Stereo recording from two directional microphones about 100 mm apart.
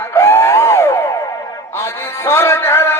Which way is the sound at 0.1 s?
25° left (ahead or behind).